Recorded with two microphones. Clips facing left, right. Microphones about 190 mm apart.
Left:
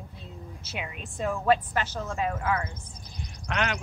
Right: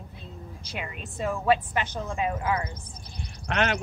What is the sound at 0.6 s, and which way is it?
A woman's voice, centre (ahead or behind).